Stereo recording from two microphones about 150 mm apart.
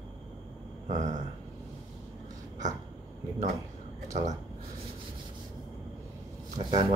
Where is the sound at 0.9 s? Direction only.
55° right (ahead or behind).